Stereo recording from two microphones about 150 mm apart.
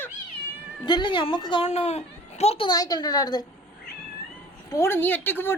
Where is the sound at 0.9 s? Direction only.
30° left (ahead or behind).